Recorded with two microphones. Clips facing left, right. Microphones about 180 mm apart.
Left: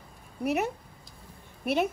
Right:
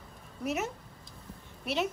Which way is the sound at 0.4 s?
60° left (ahead or behind).